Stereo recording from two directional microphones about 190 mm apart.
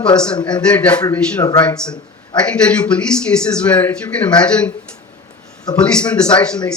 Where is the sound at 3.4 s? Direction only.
5° left (ahead or behind).